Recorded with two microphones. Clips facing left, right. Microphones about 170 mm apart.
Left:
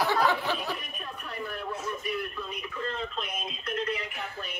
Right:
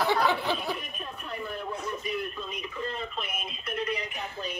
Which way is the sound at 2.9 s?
5° right (ahead or behind).